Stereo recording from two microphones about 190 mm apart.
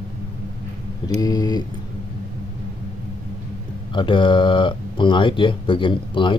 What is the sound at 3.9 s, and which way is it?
Speech, 25° left (ahead or behind).